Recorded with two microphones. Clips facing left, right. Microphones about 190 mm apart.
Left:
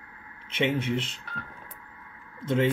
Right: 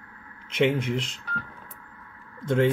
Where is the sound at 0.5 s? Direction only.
5° left (ahead or behind).